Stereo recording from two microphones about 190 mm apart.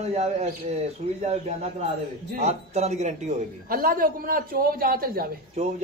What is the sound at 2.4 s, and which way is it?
Speech, 35° right (ahead or behind).